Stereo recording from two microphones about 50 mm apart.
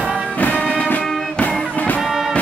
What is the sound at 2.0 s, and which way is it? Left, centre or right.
Music, centre.